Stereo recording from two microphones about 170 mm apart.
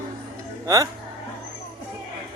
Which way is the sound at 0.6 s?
20° right (ahead or behind).